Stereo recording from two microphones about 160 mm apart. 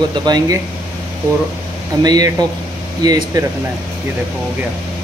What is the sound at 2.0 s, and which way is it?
Speech, 25° right (ahead or behind).